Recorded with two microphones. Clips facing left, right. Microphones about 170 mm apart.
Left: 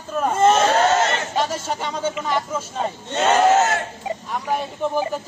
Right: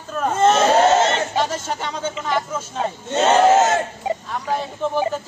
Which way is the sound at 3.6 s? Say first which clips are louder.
Right 3 dB; 20° right (ahead or behind).